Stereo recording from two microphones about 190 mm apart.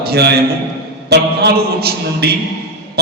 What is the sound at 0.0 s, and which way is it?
A man's voice, 60° right (ahead or behind).